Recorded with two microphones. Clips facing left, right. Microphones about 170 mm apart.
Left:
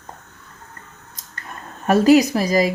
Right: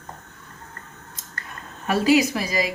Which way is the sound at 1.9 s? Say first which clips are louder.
Left 6 dB; 40° left (ahead or behind).